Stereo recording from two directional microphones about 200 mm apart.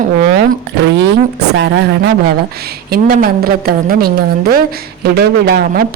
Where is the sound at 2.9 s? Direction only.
45° right (ahead or behind).